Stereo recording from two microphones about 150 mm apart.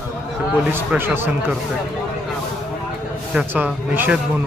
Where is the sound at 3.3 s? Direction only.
10° right (ahead or behind).